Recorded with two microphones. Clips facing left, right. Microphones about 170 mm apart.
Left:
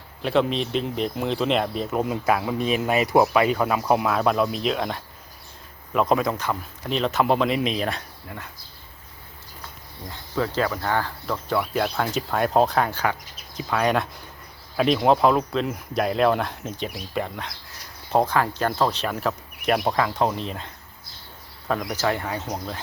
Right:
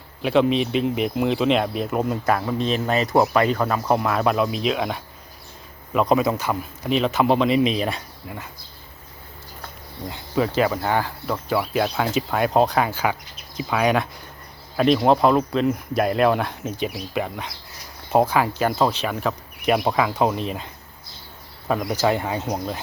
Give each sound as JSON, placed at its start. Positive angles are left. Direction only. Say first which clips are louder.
{"t": 0.2, "sound": "speech", "louder": "right 3 dB", "side_deg": -5}
{"t": 10.1, "sound": "speech", "louder": "right 4 dB", "side_deg": -15}
{"t": 21.9, "sound": "speech", "louder": "right 4 dB", "side_deg": -20}